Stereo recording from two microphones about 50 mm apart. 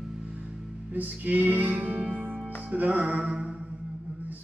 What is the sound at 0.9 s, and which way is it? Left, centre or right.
Music, right.